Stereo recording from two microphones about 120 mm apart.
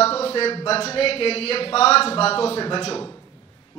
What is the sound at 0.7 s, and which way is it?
A man's voice, 55° left (ahead or behind).